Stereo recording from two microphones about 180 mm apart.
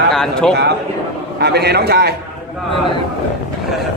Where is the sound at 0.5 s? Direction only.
70° right (ahead or behind).